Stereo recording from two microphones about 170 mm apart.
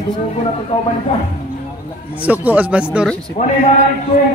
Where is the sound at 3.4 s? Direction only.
45° left (ahead or behind).